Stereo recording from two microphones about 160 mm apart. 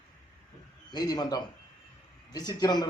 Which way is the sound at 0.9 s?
25° left (ahead or behind).